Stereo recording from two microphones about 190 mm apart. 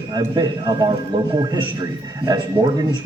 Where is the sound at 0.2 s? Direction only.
20° right (ahead or behind).